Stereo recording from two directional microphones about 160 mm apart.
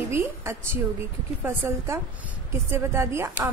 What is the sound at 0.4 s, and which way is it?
A woman's voice, 15° right (ahead or behind).